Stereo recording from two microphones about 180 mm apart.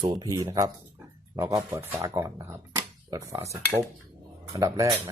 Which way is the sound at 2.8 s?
20° right (ahead or behind).